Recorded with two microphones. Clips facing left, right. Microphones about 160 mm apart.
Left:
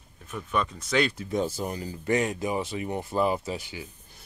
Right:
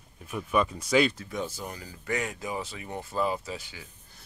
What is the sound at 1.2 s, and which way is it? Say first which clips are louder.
Speech: left 6 dB; 30° left (ahead or behind).